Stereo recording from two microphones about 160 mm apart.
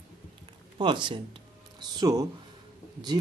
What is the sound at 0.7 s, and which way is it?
Speech, 30° right (ahead or behind).